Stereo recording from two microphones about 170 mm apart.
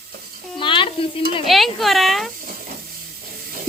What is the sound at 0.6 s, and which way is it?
Sizzle, 30° left (ahead or behind).